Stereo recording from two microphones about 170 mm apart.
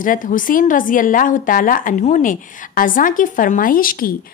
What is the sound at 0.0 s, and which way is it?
A woman's voice, 50° left (ahead or behind).